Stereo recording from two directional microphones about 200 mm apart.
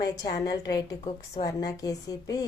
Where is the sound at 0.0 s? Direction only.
20° left (ahead or behind).